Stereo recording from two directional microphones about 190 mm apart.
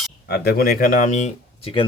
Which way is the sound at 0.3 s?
60° left (ahead or behind).